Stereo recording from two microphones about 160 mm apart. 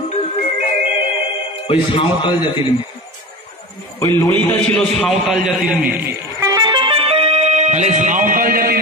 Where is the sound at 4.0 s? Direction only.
20° left (ahead or behind).